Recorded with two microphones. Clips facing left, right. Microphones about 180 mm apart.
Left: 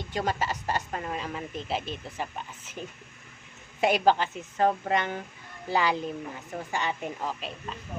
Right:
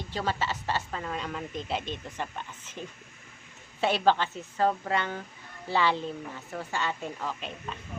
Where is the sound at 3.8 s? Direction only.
15° left (ahead or behind).